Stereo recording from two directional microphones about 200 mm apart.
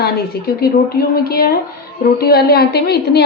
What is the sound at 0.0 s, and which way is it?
A woman's voice, 50° left (ahead or behind).